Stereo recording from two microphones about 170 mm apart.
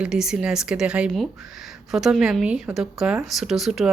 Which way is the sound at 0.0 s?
5° right (ahead or behind).